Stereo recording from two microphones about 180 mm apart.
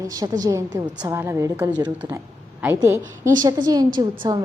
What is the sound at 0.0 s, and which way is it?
A woman's voice, 20° right (ahead or behind).